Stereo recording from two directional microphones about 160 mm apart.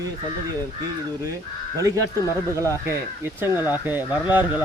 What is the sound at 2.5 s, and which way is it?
Speech, 20° right (ahead or behind).